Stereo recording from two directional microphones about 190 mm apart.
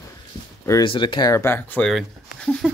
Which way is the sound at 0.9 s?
25° left (ahead or behind).